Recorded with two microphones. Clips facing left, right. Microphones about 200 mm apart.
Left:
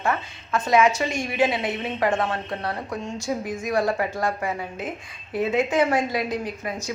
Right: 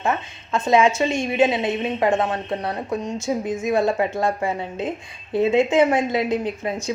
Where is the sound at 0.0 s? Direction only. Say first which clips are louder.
Right 2 dB; 25° right (ahead or behind).